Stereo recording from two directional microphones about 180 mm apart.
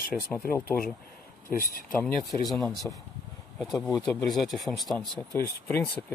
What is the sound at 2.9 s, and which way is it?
Speech, 15° left (ahead or behind).